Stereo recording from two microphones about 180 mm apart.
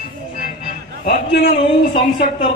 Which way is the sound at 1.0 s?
50° left (ahead or behind).